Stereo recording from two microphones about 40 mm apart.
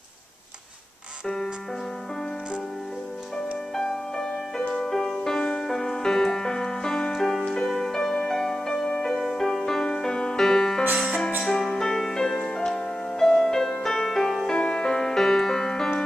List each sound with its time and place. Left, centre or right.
1.2 s music: centre
3.7 s music: centre
5.4 s music: left
5.7 s music: centre
8.7 s music: left
9.0 s music: centre
14.5 s music: left